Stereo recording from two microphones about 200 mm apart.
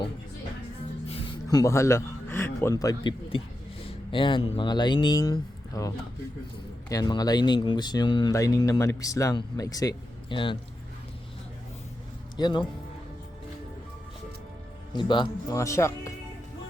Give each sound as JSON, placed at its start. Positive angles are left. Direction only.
{"t": 1.0, "sound": "speech", "side_deg": 30}
{"t": 12.4, "sound": "speech", "side_deg": 25}
{"t": 14.9, "sound": "speech", "side_deg": 25}